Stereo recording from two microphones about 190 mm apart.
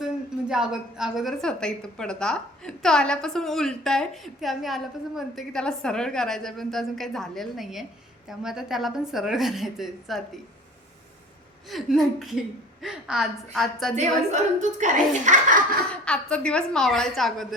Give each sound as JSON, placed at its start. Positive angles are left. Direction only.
{"t": 0.0, "sound": "a woman's voice", "side_deg": -5}
{"t": 11.7, "sound": "a woman's voice", "side_deg": 0}
{"t": 13.9, "sound": "a woman's voice", "side_deg": -35}
{"t": 15.9, "sound": "a woman's voice", "side_deg": 5}